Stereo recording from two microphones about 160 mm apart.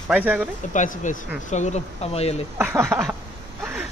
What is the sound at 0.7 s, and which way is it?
Speech, 50° left (ahead or behind).